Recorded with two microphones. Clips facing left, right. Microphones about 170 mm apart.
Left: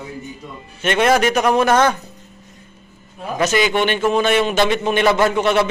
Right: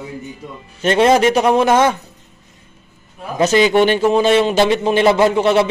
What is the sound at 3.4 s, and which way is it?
Speech, 35° right (ahead or behind).